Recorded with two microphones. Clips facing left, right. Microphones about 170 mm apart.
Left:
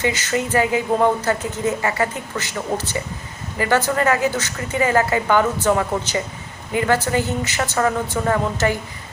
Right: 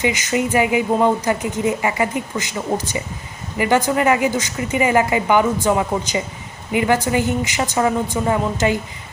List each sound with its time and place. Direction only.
0.0 s a woman's voice: 15° right (ahead or behind)